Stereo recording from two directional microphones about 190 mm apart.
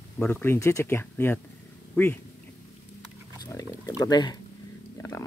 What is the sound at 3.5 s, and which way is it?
Speech, 15° left (ahead or behind).